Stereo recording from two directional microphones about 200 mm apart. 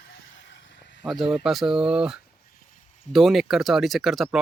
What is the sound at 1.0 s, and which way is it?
Speech, centre (ahead or behind).